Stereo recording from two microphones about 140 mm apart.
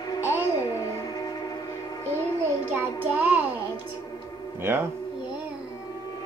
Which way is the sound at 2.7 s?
10° right (ahead or behind).